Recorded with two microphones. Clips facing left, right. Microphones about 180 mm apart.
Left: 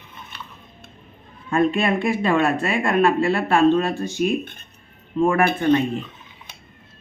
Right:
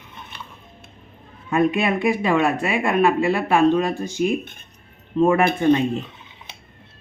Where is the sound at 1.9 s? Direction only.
Centre (ahead or behind).